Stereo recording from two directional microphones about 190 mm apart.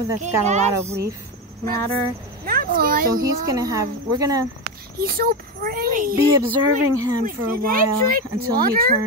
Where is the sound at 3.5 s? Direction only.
20° right (ahead or behind).